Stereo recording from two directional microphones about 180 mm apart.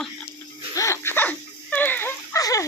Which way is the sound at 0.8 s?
15° left (ahead or behind).